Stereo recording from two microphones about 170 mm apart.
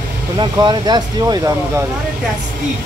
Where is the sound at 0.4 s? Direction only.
25° right (ahead or behind).